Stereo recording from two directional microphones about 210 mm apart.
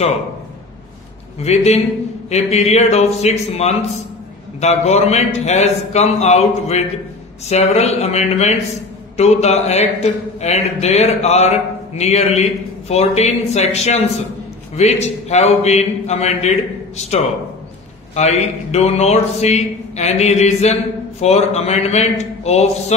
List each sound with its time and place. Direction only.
1.4 s speech: 30° left (ahead or behind)